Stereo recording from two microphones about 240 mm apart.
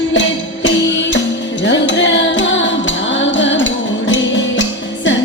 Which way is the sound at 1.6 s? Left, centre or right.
Left.